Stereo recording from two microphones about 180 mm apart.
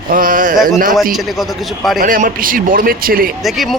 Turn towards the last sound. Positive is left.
turn(degrees=0)  # may be behind; listen again after turning